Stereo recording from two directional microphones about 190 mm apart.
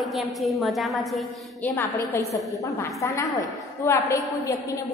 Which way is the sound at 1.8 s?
15° left (ahead or behind).